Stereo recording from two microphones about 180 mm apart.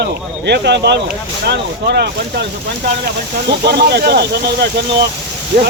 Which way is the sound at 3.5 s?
65° right (ahead or behind).